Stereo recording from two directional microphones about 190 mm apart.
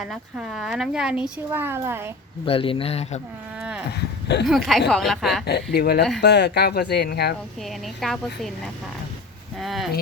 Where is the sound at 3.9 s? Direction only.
60° left (ahead or behind).